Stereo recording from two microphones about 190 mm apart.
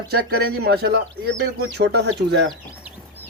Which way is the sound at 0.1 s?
55° right (ahead or behind).